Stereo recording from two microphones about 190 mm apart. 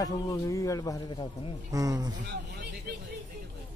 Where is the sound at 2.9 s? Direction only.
60° right (ahead or behind).